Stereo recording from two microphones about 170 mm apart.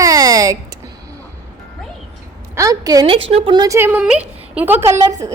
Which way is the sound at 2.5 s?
20° right (ahead or behind).